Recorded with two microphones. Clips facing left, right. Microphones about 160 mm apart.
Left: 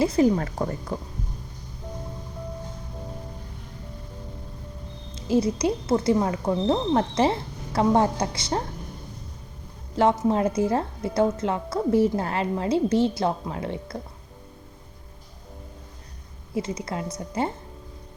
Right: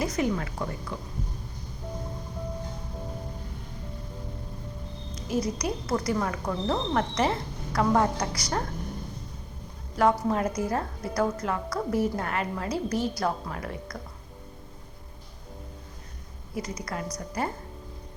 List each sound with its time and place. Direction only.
0.0 s a woman's voice: 30° left (ahead or behind)
5.1 s a woman's voice: 30° left (ahead or behind)
9.9 s a woman's voice: 25° left (ahead or behind)
16.6 s a woman's voice: 25° left (ahead or behind)